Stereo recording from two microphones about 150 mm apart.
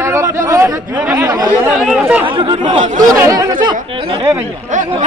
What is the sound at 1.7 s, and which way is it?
Speech, 5° right (ahead or behind).